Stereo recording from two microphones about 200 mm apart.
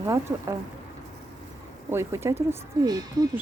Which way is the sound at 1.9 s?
15° right (ahead or behind).